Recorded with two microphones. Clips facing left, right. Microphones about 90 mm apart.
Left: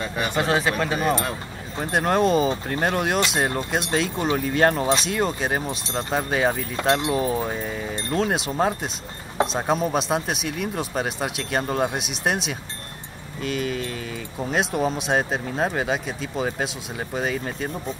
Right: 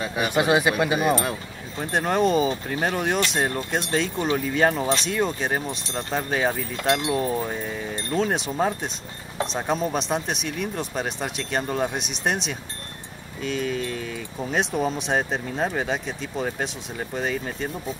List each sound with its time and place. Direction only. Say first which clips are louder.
0.0 s speech: right 2 dB; 10° right (ahead or behind)
1.8 s speech: left 1 dB; 5° left (ahead or behind)
5.9 s speech: left 3 dB; 15° left (ahead or behind)
6.3 s speech: left 1 dB; 5° left (ahead or behind)